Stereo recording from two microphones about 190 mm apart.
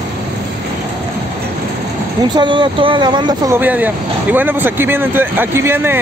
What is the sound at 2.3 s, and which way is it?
Speech, 25° right (ahead or behind).